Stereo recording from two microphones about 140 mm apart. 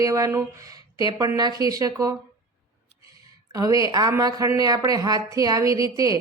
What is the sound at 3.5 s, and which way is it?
Speech, 25° right (ahead or behind).